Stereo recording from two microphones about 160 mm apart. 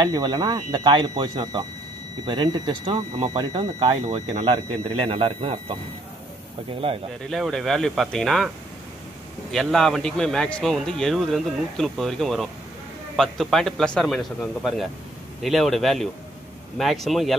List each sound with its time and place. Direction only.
0.0 s speech: 25° right (ahead or behind)
4.0 s a man's voice: 40° right (ahead or behind)
6.8 s a man's voice: 35° right (ahead or behind)
7.2 s a man's voice: centre (ahead or behind)
9.5 s a man's voice: centre (ahead or behind)